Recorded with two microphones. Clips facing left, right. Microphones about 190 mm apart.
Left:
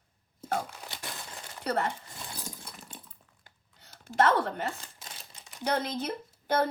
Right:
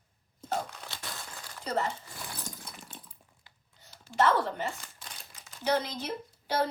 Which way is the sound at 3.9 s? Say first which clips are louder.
Left 1 dB; 50° left (ahead or behind).